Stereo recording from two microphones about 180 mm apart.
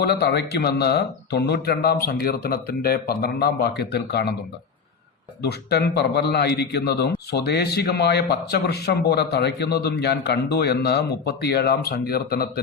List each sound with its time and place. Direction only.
0.0 s a man's voice: 65° left (ahead or behind)
5.4 s a man's voice: 65° left (ahead or behind)